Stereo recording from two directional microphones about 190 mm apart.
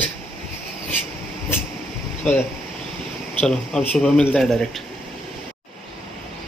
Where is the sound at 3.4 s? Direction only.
5° left (ahead or behind).